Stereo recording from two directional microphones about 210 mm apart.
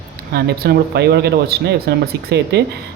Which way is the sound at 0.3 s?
50° right (ahead or behind).